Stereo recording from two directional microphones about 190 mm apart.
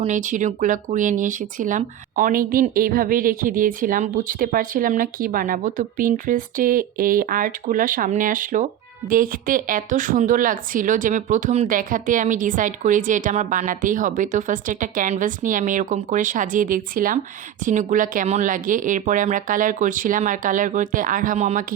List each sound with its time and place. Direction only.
0.0 s speech: 40° right (ahead or behind)